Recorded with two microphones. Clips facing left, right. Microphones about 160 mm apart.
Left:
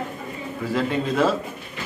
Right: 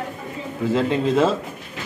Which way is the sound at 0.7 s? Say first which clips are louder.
Right 3 dB; 25° right (ahead or behind).